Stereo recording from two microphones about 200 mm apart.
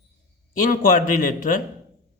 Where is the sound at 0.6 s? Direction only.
40° left (ahead or behind).